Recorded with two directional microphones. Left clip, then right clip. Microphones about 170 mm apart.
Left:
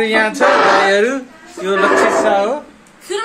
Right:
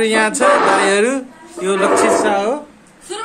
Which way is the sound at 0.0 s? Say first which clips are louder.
Left 1 dB; 25° right (ahead or behind).